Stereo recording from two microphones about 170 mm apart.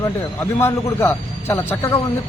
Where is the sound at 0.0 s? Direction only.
15° left (ahead or behind).